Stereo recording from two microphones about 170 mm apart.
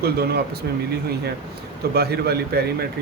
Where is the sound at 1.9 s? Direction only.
65° right (ahead or behind).